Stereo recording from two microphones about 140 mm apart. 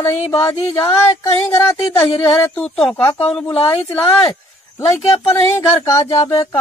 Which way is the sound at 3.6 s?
45° left (ahead or behind).